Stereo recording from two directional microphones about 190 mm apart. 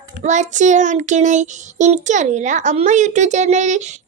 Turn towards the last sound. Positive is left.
turn(degrees=-40)  # may be behind; listen again after turning